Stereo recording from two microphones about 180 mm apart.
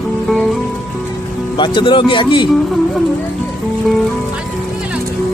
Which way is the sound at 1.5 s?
25° left (ahead or behind).